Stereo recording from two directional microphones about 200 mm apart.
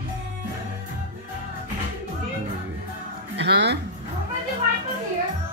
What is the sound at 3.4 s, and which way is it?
Speech, 60° right (ahead or behind).